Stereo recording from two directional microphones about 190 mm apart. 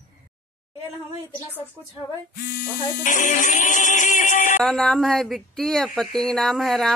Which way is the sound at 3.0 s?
40° left (ahead or behind).